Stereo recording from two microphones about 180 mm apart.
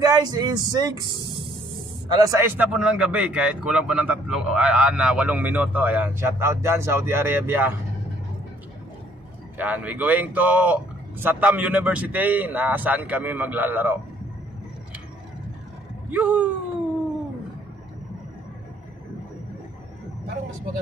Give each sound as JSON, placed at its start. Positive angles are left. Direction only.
{"t": 0.0, "sound": "a man's voice", "side_deg": -20}
{"t": 9.6, "sound": "a man's voice", "side_deg": -10}
{"t": 16.1, "sound": "a man's voice", "side_deg": -10}